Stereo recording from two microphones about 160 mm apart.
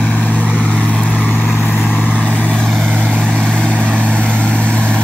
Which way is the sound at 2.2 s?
10° left (ahead or behind).